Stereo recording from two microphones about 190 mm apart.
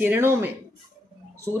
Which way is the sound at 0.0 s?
10° right (ahead or behind).